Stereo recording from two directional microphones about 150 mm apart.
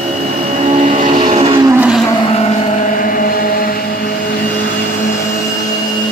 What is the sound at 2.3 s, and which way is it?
Chant, 45° left (ahead or behind).